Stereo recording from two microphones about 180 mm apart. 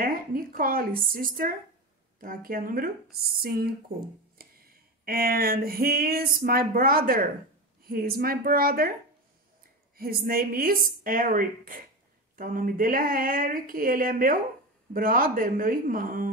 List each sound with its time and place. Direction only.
0.0 s speech: 50° right (ahead or behind)
5.0 s speech: 55° right (ahead or behind)
9.9 s speech: 55° right (ahead or behind)